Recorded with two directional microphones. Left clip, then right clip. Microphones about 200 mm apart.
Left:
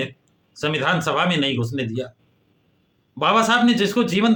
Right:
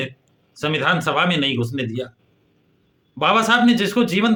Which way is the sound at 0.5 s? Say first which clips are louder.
Right 1 dB; 15° right (ahead or behind).